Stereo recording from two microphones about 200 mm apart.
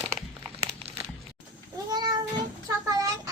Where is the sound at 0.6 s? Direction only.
30° right (ahead or behind).